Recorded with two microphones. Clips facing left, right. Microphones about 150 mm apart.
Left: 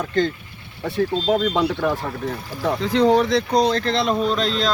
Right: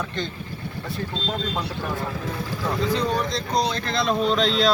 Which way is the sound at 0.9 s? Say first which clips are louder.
Left 11 dB; 70° left (ahead or behind).